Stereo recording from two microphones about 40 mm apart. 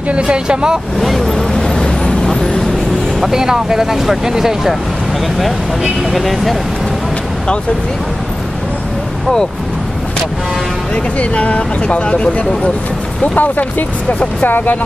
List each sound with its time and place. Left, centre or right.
0.1 s speech: right
1.0 s speech: centre
1.8 s vehicle: centre
3.2 s speech: centre
6.1 s speech: centre
11.1 s speech: left
13.4 s speech: left